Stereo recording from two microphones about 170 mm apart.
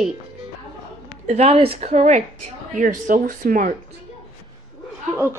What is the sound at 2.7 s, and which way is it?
Speech, 50° right (ahead or behind).